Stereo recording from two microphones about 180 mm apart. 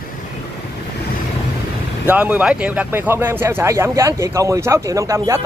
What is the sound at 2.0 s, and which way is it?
Speech, 10° right (ahead or behind).